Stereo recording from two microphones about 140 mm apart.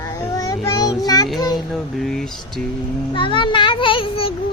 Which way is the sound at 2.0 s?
5° left (ahead or behind).